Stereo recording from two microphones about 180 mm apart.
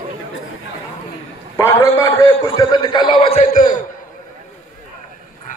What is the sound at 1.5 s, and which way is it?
A man's voice, 15° left (ahead or behind).